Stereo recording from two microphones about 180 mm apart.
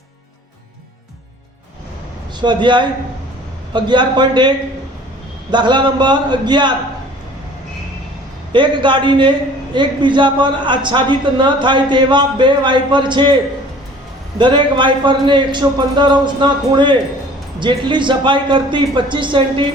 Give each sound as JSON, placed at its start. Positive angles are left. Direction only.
{"t": 2.4, "sound": "a man's voice", "side_deg": -25}
{"t": 8.5, "sound": "a man's voice", "side_deg": -25}